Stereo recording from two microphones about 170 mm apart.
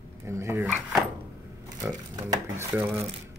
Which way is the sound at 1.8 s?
20° right (ahead or behind).